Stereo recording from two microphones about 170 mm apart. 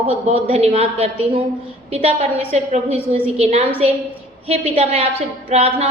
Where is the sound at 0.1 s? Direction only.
35° right (ahead or behind).